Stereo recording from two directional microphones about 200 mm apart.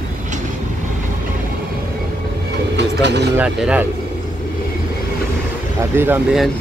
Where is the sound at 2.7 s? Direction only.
60° right (ahead or behind).